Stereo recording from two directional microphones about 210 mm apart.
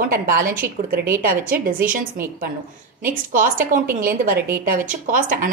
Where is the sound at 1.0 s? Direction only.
10° right (ahead or behind).